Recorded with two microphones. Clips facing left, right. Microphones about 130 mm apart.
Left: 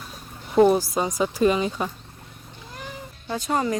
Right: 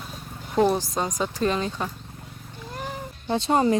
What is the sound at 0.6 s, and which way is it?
Speech, 5° left (ahead or behind).